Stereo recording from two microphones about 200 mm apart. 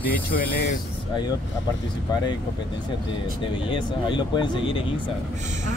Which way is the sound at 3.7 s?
25° left (ahead or behind).